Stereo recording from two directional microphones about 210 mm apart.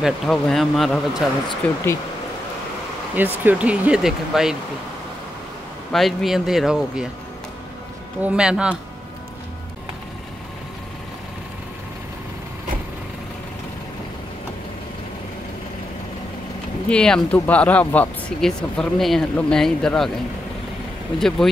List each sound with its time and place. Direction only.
0.0 s speech: centre (ahead or behind)
1.1 s speech: 15° left (ahead or behind)
3.2 s speech: 10° right (ahead or behind)
5.9 s speech: centre (ahead or behind)
8.2 s speech: 5° right (ahead or behind)
16.9 s speech: 5° left (ahead or behind)